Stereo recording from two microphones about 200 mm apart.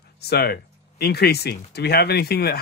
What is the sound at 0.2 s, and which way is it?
Speech, 55° left (ahead or behind).